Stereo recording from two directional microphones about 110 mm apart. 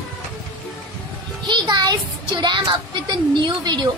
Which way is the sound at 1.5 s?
40° right (ahead or behind).